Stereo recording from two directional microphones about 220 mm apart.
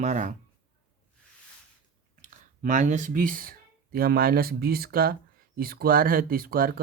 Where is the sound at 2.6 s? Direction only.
35° right (ahead or behind).